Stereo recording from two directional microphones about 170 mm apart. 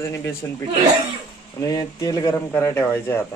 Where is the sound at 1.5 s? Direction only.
20° left (ahead or behind).